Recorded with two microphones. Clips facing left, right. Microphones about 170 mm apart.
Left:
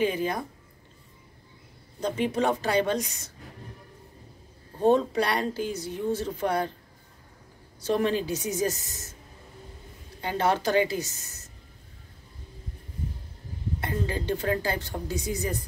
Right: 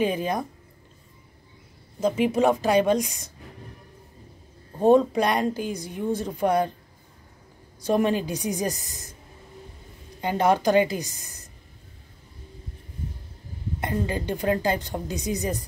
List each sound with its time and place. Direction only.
0.0 s speech: 20° right (ahead or behind)
2.0 s speech: 5° right (ahead or behind)
4.8 s speech: 15° right (ahead or behind)
7.8 s speech: 15° right (ahead or behind)
10.2 s speech: 15° right (ahead or behind)
13.7 s speech: 15° right (ahead or behind)